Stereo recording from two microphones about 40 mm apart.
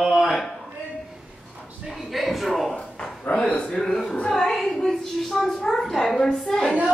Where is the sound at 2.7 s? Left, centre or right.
Left.